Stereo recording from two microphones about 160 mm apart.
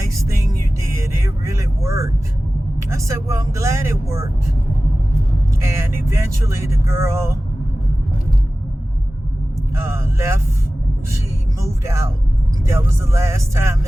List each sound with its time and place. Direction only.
1.0 s speech: 20° right (ahead or behind)
5.6 s speech: 15° right (ahead or behind)
9.7 s speech: 15° right (ahead or behind)
11.6 s music: 20° right (ahead or behind)
12.6 s speech: 20° right (ahead or behind)